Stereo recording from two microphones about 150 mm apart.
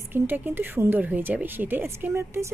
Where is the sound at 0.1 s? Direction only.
15° right (ahead or behind).